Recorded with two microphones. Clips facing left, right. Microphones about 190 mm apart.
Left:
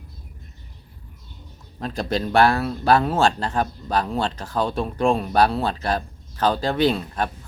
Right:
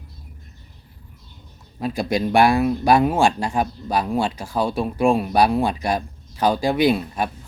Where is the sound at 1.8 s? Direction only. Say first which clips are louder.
Right 3 dB; 10° right (ahead or behind).